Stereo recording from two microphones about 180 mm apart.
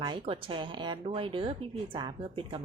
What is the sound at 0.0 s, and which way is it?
Speech, 25° right (ahead or behind).